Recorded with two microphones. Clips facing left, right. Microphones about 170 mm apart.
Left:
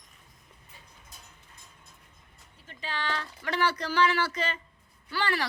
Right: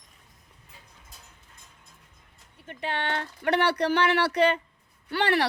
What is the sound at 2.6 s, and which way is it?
Speech, 60° right (ahead or behind).